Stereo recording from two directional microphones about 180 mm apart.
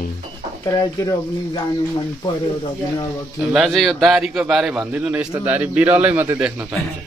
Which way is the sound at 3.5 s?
Centre (ahead or behind).